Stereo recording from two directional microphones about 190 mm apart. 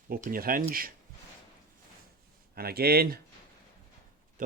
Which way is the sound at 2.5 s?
55° right (ahead or behind).